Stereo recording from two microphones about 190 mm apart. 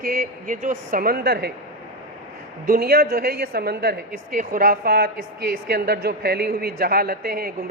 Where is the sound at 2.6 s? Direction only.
50° right (ahead or behind).